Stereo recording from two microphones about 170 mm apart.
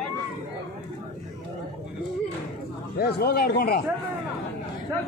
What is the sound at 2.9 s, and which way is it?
Speech, 70° left (ahead or behind).